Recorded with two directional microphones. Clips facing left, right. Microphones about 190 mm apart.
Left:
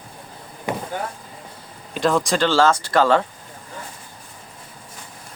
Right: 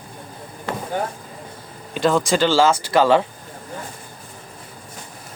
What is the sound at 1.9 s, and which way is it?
Speech, centre (ahead or behind).